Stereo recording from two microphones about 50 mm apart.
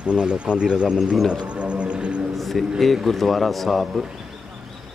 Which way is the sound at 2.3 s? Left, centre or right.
Centre.